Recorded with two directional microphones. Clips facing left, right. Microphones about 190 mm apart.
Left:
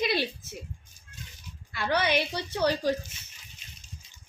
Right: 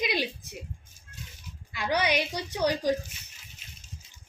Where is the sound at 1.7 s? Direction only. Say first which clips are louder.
Even; 15° right (ahead or behind).